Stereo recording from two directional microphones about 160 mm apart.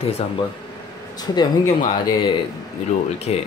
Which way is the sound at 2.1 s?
30° left (ahead or behind).